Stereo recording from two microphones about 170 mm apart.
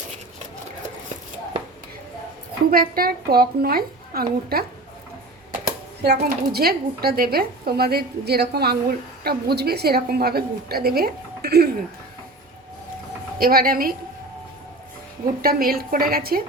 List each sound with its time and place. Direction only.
2.6 s a woman's voice: 60° right (ahead or behind)
6.0 s speech: 70° right (ahead or behind)
13.4 s a woman's voice: 60° right (ahead or behind)
15.4 s a woman's voice: 60° right (ahead or behind)